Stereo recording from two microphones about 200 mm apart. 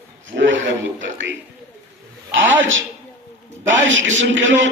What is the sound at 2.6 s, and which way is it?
A man's voice, 70° right (ahead or behind).